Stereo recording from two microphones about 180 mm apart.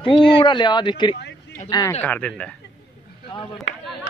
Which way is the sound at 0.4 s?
25° left (ahead or behind).